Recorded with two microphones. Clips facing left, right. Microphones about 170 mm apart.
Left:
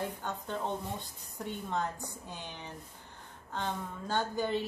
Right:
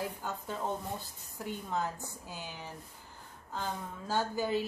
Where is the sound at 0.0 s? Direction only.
5° right (ahead or behind).